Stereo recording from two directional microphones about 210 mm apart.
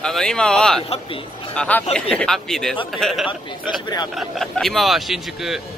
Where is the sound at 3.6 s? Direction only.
20° left (ahead or behind).